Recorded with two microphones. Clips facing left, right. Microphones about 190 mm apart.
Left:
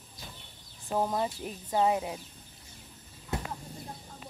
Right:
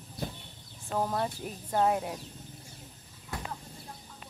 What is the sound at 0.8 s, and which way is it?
Speech, 15° left (ahead or behind).